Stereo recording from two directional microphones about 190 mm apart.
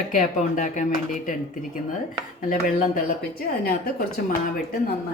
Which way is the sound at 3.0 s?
50° left (ahead or behind).